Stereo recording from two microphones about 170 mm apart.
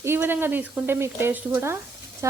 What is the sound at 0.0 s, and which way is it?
Speech, 15° right (ahead or behind).